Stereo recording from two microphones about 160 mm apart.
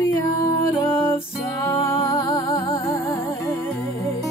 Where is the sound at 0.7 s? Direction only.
30° left (ahead or behind).